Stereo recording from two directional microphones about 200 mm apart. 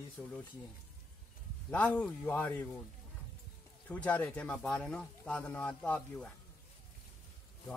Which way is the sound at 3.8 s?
5° left (ahead or behind).